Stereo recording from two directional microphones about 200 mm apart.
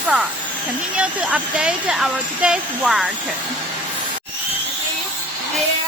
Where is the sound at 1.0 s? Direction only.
5° right (ahead or behind).